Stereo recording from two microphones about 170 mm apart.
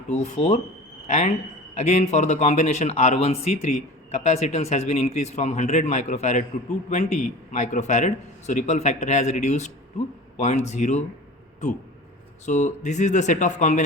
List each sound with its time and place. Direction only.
0.1 s a man's voice: 40° left (ahead or behind)
12.5 s a man's voice: 45° left (ahead or behind)